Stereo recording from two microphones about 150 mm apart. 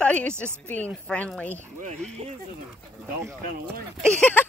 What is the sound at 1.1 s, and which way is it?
Speech, 10° left (ahead or behind).